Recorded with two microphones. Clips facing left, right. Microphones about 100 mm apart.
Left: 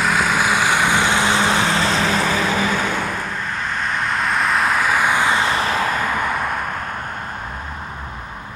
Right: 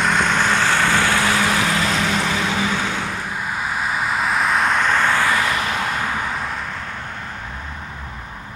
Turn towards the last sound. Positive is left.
turn(degrees=50)  # may be behind; listen again after turning